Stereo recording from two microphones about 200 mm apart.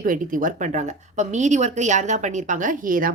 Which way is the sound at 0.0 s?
40° right (ahead or behind).